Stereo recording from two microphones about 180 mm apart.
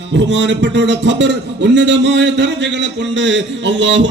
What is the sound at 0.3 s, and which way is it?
A man's voice, 80° right.